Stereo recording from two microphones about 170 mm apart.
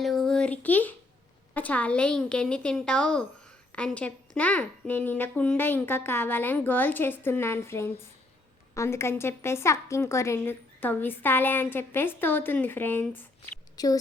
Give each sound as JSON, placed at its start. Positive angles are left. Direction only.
{"t": 0.0, "sound": "a sound", "side_deg": 0}
{"t": 1.5, "sound": "a woman's voice", "side_deg": 10}
{"t": 13.7, "sound": "a woman's voice", "side_deg": 20}